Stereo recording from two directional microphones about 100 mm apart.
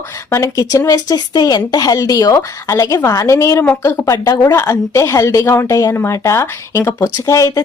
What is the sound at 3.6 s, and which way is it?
Speech, 20° left (ahead or behind).